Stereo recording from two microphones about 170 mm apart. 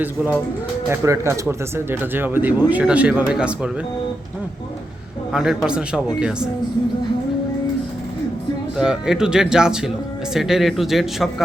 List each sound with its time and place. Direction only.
0.9 s speech: 15° right (ahead or behind)
5.3 s speech: 5° right (ahead or behind)
8.8 s speech: 5° right (ahead or behind)